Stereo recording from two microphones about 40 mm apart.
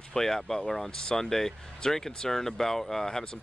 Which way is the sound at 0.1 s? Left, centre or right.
Centre.